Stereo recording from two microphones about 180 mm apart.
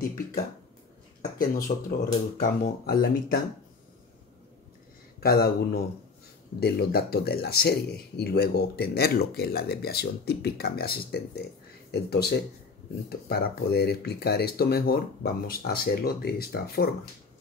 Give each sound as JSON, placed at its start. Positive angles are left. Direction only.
{"t": 1.4, "sound": "speech", "side_deg": 50}
{"t": 5.2, "sound": "speech", "side_deg": 60}